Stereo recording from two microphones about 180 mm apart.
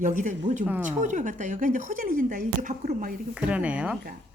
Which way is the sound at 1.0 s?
45° right (ahead or behind).